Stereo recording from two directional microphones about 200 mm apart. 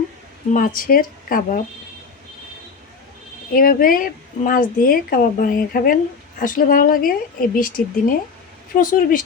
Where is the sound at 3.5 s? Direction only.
45° left (ahead or behind).